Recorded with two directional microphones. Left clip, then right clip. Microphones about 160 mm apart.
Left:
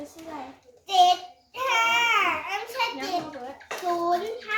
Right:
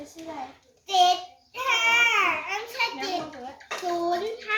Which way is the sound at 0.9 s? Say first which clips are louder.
Left 1 dB; 10° right (ahead or behind).